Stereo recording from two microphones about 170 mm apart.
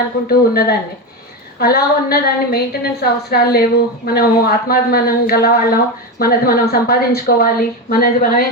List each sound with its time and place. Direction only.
0.3 s a woman's voice: 65° left (ahead or behind)